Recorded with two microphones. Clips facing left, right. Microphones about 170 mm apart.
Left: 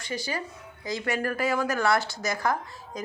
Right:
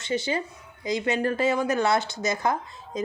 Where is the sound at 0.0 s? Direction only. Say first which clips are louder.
Right 5 dB; 25° right (ahead or behind).